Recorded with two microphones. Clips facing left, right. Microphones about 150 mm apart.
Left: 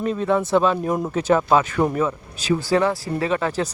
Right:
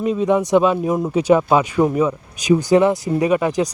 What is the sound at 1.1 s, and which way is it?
A man's voice, 10° right (ahead or behind).